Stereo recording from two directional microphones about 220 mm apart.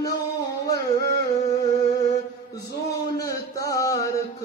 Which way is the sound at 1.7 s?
15° left (ahead or behind).